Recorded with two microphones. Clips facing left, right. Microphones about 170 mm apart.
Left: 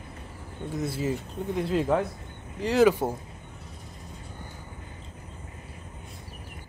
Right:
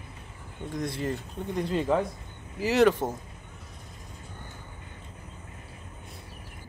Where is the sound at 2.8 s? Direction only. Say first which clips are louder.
Left 1 dB; 10° left (ahead or behind).